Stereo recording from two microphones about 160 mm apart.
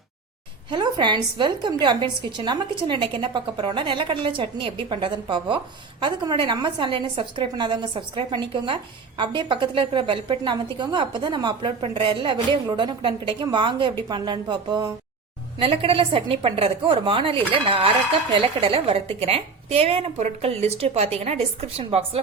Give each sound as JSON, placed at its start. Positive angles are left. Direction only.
{"t": 0.7, "sound": "a woman's voice", "side_deg": -30}
{"t": 15.5, "sound": "a woman's voice", "side_deg": -35}